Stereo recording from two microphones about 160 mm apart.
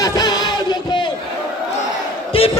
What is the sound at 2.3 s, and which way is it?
Battle cry, 35° left (ahead or behind).